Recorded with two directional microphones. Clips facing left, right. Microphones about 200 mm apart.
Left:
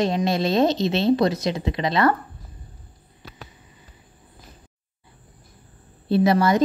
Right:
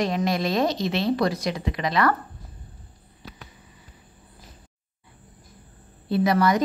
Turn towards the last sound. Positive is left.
turn(degrees=25)  # may be behind; listen again after turning